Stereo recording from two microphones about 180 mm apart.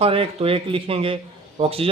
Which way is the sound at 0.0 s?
30° right (ahead or behind).